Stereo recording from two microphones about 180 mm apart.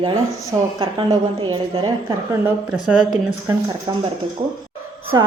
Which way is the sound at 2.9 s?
Centre (ahead or behind).